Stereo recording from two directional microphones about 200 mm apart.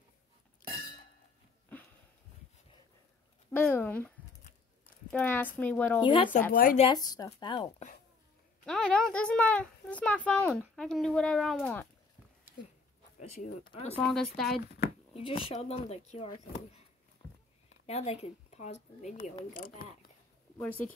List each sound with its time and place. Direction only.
1.7 s a sound: 5° left (ahead or behind)
3.5 s speech: 10° left (ahead or behind)
5.1 s speech: 10° left (ahead or behind)
5.9 s speech: 25° left (ahead or behind)
6.5 s speech: 45° left (ahead or behind)
6.8 s speech: 20° left (ahead or behind)
8.6 s speech: 5° left (ahead or behind)
13.2 s speech: 40° left (ahead or behind)
13.8 s speech: 5° left (ahead or behind)
15.1 s speech: 30° left (ahead or behind)
17.8 s speech: 30° left (ahead or behind)